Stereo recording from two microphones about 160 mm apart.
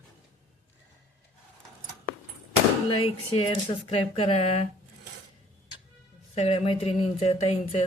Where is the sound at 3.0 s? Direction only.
35° left (ahead or behind).